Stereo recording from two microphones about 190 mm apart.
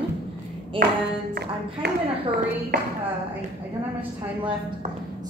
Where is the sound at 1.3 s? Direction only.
60° right (ahead or behind).